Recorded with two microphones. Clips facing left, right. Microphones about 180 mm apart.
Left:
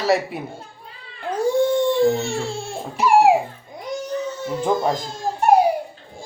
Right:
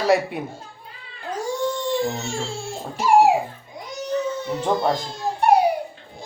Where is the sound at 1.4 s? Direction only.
60° left (ahead or behind).